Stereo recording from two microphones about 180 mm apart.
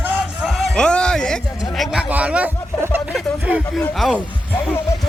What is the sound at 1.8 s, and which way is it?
Speech, 5° right (ahead or behind).